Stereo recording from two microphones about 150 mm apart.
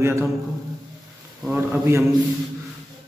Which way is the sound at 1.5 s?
15° right (ahead or behind).